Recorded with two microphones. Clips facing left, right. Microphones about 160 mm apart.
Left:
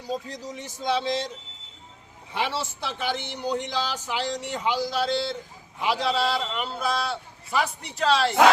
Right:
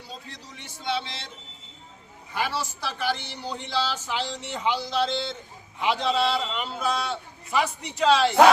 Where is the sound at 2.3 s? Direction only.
25° left (ahead or behind); by 8.4 s centre (ahead or behind).